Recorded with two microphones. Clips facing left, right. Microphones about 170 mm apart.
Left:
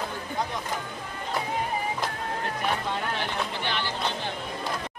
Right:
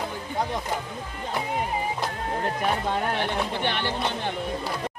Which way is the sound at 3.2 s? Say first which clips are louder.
Right 4 dB; 60° right (ahead or behind).